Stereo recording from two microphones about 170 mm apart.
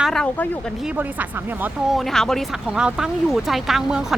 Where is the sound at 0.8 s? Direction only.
10° right (ahead or behind).